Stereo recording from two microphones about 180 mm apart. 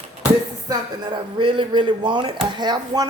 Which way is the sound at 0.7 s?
25° right (ahead or behind).